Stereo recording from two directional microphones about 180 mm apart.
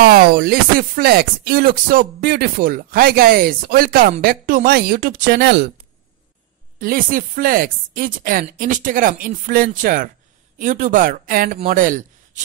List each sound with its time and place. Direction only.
0.0 s speech: 55° right (ahead or behind)
6.8 s a man's voice: 50° right (ahead or behind)